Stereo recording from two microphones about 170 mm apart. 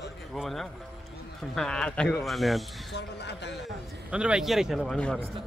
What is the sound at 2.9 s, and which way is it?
Speech, 85° left.